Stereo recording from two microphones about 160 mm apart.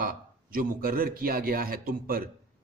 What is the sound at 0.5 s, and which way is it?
A man's voice, 60° right (ahead or behind).